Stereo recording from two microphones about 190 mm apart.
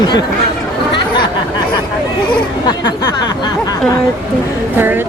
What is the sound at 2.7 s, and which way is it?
Speech, 20° left (ahead or behind).